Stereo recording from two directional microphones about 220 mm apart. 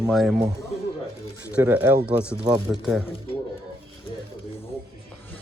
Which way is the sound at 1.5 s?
5° right (ahead or behind).